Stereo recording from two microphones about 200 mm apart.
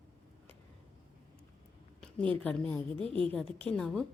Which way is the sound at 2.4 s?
5° left (ahead or behind).